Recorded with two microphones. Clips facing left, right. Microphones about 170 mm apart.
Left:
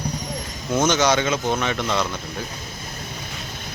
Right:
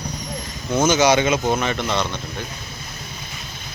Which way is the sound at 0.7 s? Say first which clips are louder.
Right 3 dB; 5° right (ahead or behind).